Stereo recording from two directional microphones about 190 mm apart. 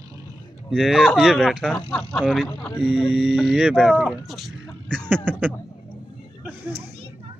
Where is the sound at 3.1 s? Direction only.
5° right (ahead or behind).